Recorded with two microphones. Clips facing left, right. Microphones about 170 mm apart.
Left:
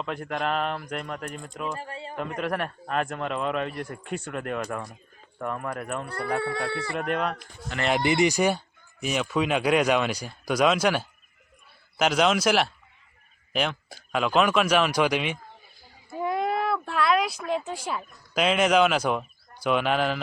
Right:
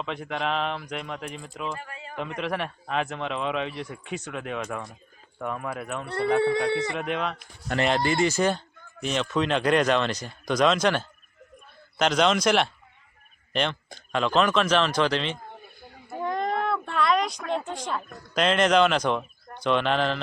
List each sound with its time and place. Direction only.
0.0 s a man's voice: centre (ahead or behind)
1.7 s speech: 35° left (ahead or behind)
2.1 s a man's voice: centre (ahead or behind)
6.1 s speech: 25° right (ahead or behind)
6.9 s a man's voice: 5° left (ahead or behind)
7.7 s speech: 50° right (ahead or behind)
8.0 s speech: 15° left (ahead or behind)
16.2 s a sound: 5° left (ahead or behind)
17.7 s speech: 5° left (ahead or behind)